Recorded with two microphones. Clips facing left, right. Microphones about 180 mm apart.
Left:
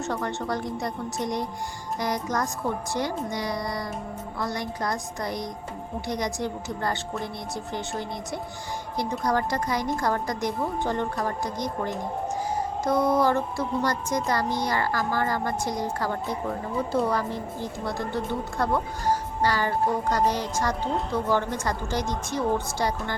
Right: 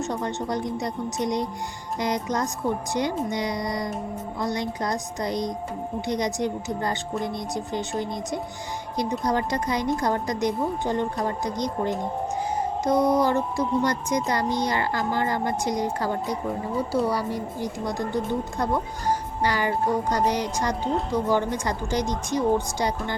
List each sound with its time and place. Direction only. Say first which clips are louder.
0.0 s a woman's voice: right 1 dB; 20° right (ahead or behind)
12.8 s a woman's voice: right 1 dB; 20° right (ahead or behind)